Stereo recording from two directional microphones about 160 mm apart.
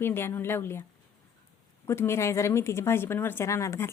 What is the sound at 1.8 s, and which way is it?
A woman's voice, 15° left (ahead or behind).